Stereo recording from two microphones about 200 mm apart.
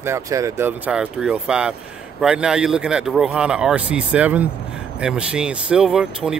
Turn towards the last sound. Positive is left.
turn(degrees=-5)  # may be behind; listen again after turning